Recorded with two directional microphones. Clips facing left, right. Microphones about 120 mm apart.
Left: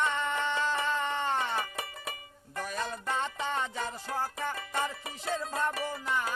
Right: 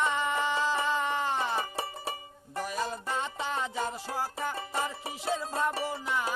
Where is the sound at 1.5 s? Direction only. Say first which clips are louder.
Right 2 dB; 30° right (ahead or behind).